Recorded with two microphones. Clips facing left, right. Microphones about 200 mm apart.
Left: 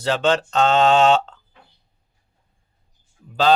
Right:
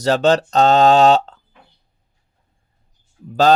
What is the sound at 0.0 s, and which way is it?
Speech, 40° right (ahead or behind).